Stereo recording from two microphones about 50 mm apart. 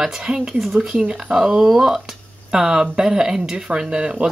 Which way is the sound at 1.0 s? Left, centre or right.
Centre.